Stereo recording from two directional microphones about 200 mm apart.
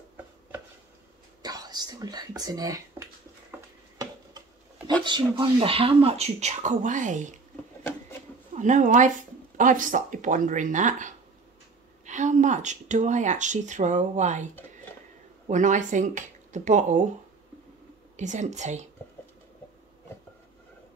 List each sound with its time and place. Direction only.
1.4 s whispering: 20° right (ahead or behind)
5.0 s speech: 25° right (ahead or behind)
8.5 s speech: 40° right (ahead or behind)
18.1 s speech: 35° right (ahead or behind)